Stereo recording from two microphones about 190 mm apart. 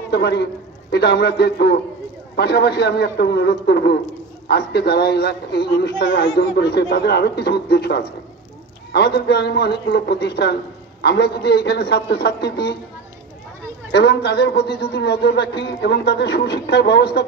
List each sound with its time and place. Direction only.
0.1 s a man's voice: 60° left (ahead or behind)
13.9 s a man's voice: 60° left (ahead or behind)